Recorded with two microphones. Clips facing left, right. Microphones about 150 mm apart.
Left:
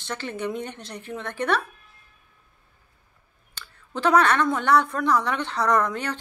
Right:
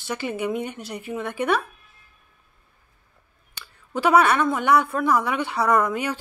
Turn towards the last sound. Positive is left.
turn(degrees=-10)  # may be behind; listen again after turning